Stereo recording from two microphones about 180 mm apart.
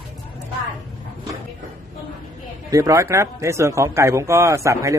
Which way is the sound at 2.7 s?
15° right (ahead or behind).